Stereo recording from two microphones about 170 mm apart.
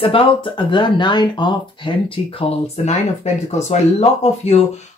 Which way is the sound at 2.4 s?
40° left (ahead or behind).